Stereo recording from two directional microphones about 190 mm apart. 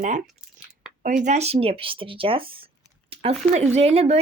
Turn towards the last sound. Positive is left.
turn(degrees=-35)  # may be behind; listen again after turning